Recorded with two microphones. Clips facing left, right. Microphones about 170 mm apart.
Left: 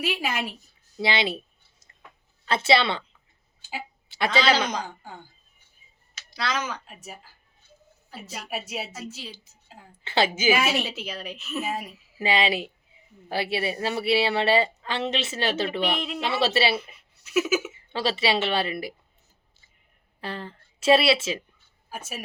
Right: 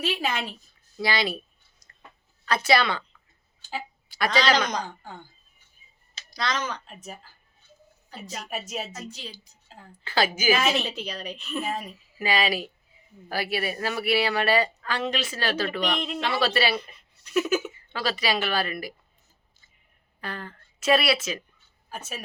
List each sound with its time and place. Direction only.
0.0 s a woman's voice: 10° left (ahead or behind)
0.9 s speech: 25° left (ahead or behind)
2.4 s a woman's voice: 25° left (ahead or behind)
3.6 s a woman's voice: 10° left (ahead or behind)
6.3 s a woman's voice: 5° left (ahead or behind)
10.0 s speech: 25° left (ahead or behind)
10.5 s a woman's voice: 10° left (ahead or behind)
12.2 s speech: 25° left (ahead or behind)
15.8 s a woman's voice: 5° left (ahead or behind)
16.3 s speech: 25° left (ahead or behind)
16.7 s speech: 5° left (ahead or behind)
17.9 s speech: 25° left (ahead or behind)
20.2 s speech: 30° left (ahead or behind)
21.8 s speech: 10° left (ahead or behind)